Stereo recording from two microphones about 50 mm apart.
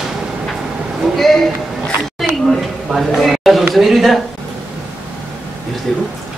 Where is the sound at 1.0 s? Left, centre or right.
Centre.